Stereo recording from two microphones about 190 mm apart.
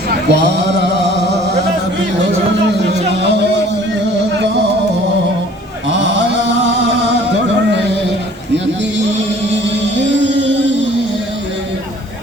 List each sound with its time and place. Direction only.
0.3 s a sound: 65° right (ahead or behind)
2.6 s music: 65° right (ahead or behind)
10.0 s music: 70° right (ahead or behind)